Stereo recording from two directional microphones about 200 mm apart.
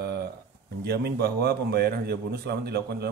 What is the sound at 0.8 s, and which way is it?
A man's voice, 55° right (ahead or behind).